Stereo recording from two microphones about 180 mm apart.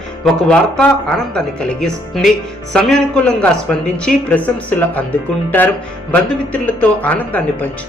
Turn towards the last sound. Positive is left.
turn(degrees=10)  # may be behind; listen again after turning